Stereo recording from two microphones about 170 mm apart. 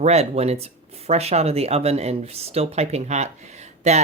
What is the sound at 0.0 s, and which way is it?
Speech, 40° right (ahead or behind).